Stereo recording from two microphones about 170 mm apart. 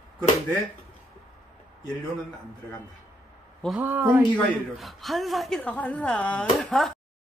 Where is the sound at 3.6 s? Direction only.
10° right (ahead or behind).